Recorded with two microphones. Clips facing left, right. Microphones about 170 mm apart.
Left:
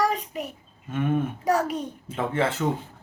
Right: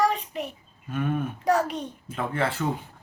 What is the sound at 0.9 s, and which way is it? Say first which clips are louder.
Speech: left 2 dB; 20° left (ahead or behind).